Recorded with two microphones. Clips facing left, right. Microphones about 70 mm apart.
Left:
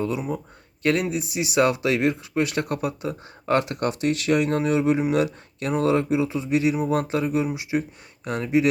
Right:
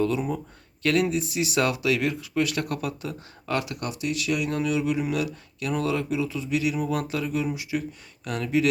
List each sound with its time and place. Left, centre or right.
0.8 s speech: left